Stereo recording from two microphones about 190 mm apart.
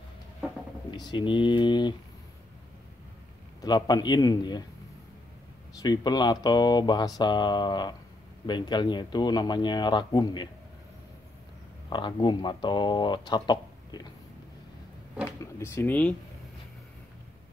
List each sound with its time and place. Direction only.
0.9 s speech: 25° left (ahead or behind)
3.6 s speech: 20° left (ahead or behind)
5.8 s speech: 20° left (ahead or behind)
11.9 s speech: 25° left (ahead or behind)
15.2 s speech: 15° left (ahead or behind)